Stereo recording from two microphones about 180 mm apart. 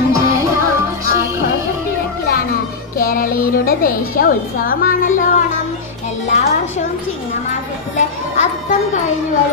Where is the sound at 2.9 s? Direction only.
50° left (ahead or behind).